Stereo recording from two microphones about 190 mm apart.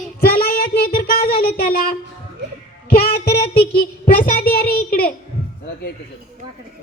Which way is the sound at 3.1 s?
55° left (ahead or behind).